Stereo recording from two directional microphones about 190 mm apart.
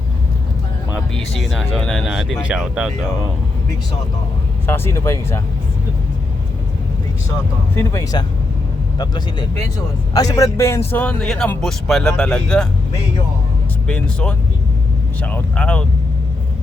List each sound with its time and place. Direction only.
1.4 s speech: centre (ahead or behind)
4.6 s speech: 10° left (ahead or behind)
8.1 s speech: 25° left (ahead or behind); by 12.6 s 5° left (ahead or behind)
13.8 s speech: 5° left (ahead or behind)